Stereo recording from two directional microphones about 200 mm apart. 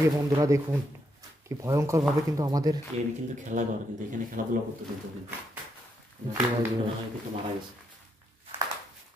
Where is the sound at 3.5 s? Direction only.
40° right (ahead or behind).